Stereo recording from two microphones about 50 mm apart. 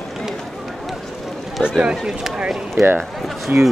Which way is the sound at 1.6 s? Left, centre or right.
Centre.